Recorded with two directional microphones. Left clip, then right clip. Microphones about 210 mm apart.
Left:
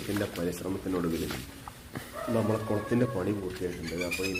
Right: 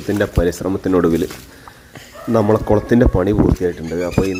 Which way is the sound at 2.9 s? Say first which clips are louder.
Right 12 dB; 45° right (ahead or behind).